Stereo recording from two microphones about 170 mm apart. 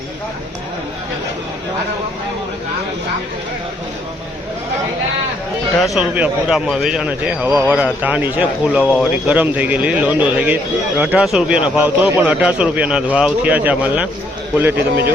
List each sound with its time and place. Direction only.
5.8 s speech: 5° right (ahead or behind)
14.8 s a man's voice: 65° right (ahead or behind)